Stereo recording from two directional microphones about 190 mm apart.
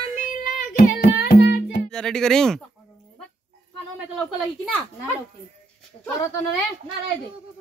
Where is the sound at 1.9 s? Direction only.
5° left (ahead or behind).